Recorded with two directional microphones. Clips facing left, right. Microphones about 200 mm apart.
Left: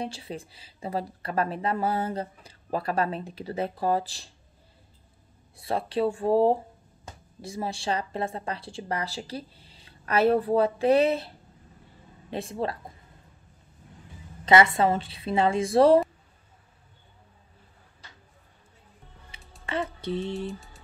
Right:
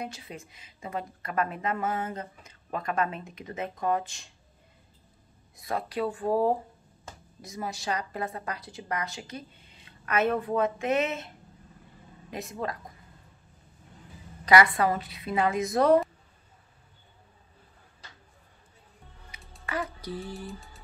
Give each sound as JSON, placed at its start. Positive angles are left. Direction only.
{"t": 0.0, "sound": "a woman's voice", "side_deg": 30}
{"t": 5.6, "sound": "a woman's voice", "side_deg": 30}
{"t": 14.4, "sound": "speech", "side_deg": 25}
{"t": 19.6, "sound": "music", "side_deg": 30}
{"t": 20.3, "sound": "music", "side_deg": 0}